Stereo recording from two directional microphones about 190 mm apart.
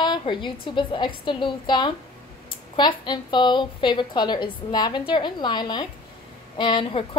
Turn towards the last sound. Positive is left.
turn(degrees=25)  # may be behind; listen again after turning